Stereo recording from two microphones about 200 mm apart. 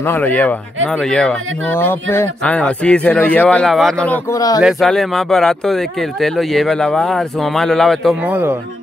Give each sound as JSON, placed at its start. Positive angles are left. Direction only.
{"t": 0.0, "sound": "speech", "side_deg": 10}
{"t": 4.6, "sound": "speech", "side_deg": 0}
{"t": 8.3, "sound": "speech", "side_deg": -10}